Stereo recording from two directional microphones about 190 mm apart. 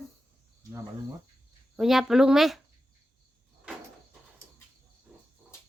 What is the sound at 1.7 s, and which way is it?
Speech, centre (ahead or behind).